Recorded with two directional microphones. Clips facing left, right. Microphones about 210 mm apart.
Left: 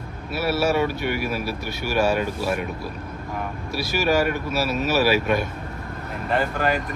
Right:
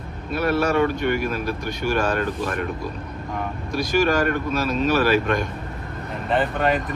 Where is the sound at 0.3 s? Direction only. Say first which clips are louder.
Right 1 dB; 5° left (ahead or behind).